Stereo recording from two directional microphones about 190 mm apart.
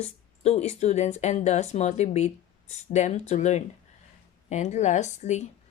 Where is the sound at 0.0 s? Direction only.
35° left (ahead or behind).